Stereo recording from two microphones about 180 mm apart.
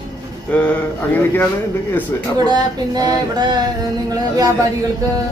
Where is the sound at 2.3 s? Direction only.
25° right (ahead or behind).